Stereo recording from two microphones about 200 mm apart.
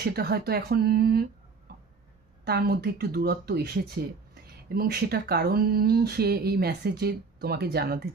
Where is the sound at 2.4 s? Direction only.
50° right (ahead or behind).